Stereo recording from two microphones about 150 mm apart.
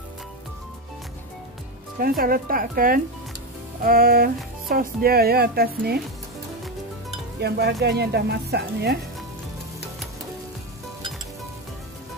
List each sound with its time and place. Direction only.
2.0 s speech: 75° right (ahead or behind)
3.8 s music: 80° right
4.6 s speech: 85° right
7.3 s speech: 90° right